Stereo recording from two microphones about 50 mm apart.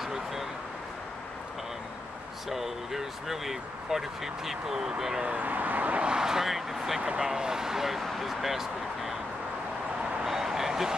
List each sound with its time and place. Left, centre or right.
0.0 s vehicle: centre
2.5 s speech: centre
5.2 s speech: right
5.5 s speech: right; by 9.1 s centre
10.2 s a sound: centre